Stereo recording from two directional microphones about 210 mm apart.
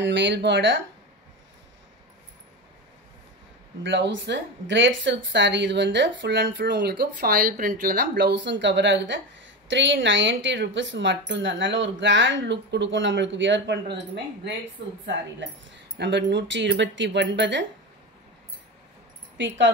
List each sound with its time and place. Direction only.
0.0 s speech: 55° right (ahead or behind)
3.8 s a woman's voice: 60° right (ahead or behind)
15.0 s speech: 60° right (ahead or behind)
19.3 s speech: 60° right (ahead or behind)